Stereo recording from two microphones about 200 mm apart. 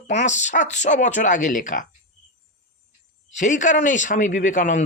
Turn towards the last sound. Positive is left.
turn(degrees=40)  # may be behind; listen again after turning